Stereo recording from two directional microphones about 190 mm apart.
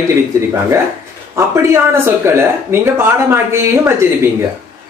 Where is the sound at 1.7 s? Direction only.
15° right (ahead or behind).